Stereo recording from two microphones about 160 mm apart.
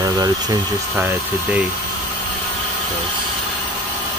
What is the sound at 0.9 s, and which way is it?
Speech, 10° right (ahead or behind).